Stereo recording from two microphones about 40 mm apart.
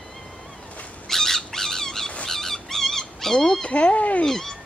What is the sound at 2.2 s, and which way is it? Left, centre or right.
Dog, centre.